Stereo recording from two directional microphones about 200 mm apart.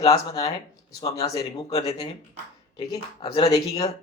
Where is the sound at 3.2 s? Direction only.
25° left (ahead or behind).